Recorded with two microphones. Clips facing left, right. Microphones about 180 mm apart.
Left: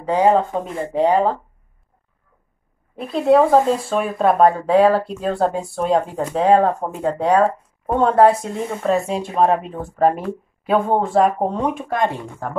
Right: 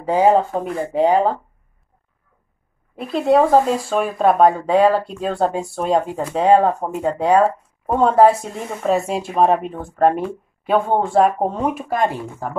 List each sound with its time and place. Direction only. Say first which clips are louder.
0.0 s speech: right 1 dB; 10° right (ahead or behind)
3.0 s speech: left 1 dB; centre (ahead or behind)